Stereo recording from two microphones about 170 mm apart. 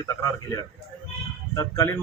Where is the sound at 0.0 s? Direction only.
20° left (ahead or behind).